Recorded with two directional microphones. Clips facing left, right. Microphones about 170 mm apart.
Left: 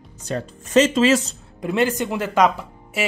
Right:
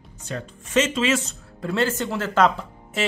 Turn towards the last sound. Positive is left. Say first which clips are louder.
# left 1 dB
turn(degrees=10)  # may be behind; listen again after turning